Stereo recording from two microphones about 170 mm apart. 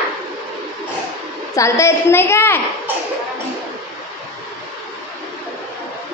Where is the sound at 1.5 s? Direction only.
20° left (ahead or behind).